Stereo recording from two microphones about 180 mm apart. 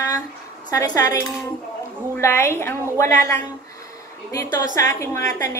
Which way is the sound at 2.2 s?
15° left (ahead or behind).